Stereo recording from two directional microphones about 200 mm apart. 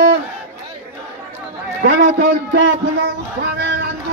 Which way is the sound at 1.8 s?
55° right (ahead or behind).